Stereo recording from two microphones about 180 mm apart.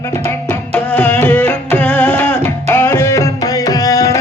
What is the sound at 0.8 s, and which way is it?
Music, 10° left (ahead or behind).